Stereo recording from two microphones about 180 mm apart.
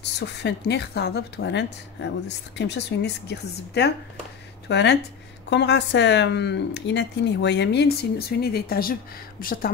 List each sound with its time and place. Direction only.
0.0 s a woman's voice: 75° left (ahead or behind); by 9.7 s 55° left (ahead or behind)